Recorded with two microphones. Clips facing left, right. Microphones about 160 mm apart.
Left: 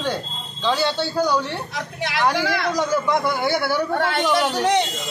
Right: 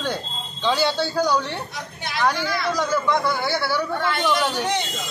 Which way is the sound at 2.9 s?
15° left (ahead or behind).